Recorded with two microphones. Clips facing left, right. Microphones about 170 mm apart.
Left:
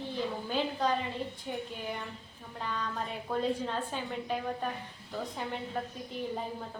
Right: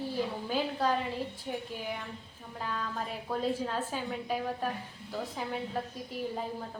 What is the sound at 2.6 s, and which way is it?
A woman's voice, 5° right (ahead or behind).